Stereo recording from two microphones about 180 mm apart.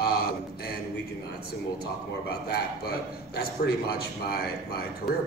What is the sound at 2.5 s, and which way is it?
A man's voice, 60° left (ahead or behind).